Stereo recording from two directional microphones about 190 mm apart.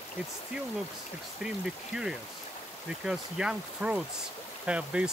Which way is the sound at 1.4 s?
5° right (ahead or behind).